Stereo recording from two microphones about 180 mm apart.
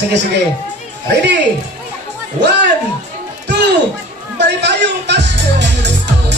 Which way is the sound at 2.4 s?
70° right (ahead or behind).